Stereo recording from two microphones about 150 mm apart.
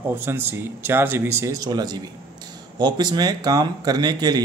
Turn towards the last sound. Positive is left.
turn(degrees=-25)  # may be behind; listen again after turning